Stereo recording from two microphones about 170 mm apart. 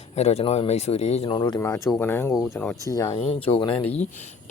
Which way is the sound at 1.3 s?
25° left (ahead or behind).